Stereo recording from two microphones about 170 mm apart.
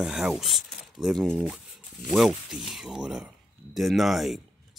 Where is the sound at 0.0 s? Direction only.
5° right (ahead or behind).